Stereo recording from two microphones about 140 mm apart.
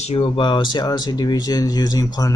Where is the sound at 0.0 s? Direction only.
40° left (ahead or behind).